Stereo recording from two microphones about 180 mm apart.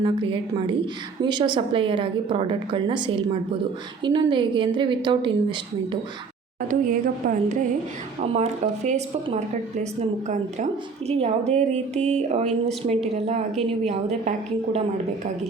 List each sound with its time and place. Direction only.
0.0 s a woman's voice: 25° right (ahead or behind)
6.6 s speech: 50° right (ahead or behind)
8.2 s speech: 35° right (ahead or behind)